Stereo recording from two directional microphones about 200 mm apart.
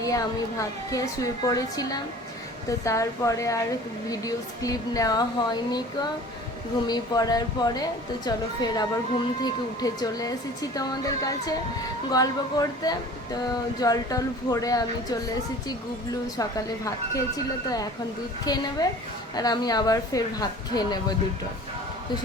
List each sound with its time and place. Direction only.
0.0 s a woman's voice: 15° left (ahead or behind)
16.4 s a woman's voice: 15° left (ahead or behind)